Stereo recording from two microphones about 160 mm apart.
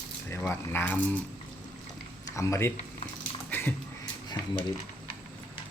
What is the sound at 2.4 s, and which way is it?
Speech, 20° left (ahead or behind).